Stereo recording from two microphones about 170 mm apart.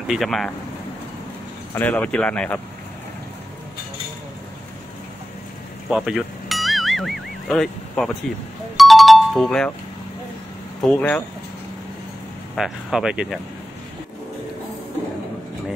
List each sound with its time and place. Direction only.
0.1 s speech: centre (ahead or behind)
1.7 s speech: 10° left (ahead or behind)
5.9 s music: centre (ahead or behind)
10.8 s speech: 5° left (ahead or behind)
12.5 s speech: 5° right (ahead or behind)